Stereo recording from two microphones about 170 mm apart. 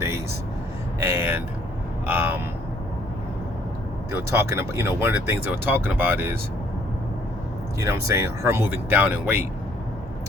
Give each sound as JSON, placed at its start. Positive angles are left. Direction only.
{"t": 0.9, "sound": "vehicle", "side_deg": -15}
{"t": 4.1, "sound": "speech", "side_deg": -15}
{"t": 7.8, "sound": "speech", "side_deg": -15}